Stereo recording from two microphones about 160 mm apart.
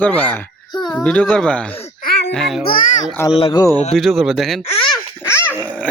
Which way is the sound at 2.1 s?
90° left.